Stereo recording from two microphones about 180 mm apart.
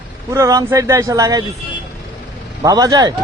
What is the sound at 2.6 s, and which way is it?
Speech, 20° right (ahead or behind).